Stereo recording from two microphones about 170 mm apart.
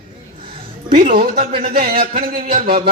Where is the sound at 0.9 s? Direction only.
55° right (ahead or behind).